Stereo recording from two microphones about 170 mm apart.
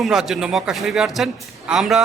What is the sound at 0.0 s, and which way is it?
A man's voice, centre (ahead or behind).